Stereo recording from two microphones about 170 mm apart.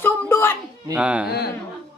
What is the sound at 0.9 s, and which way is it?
Speech, 5° right (ahead or behind).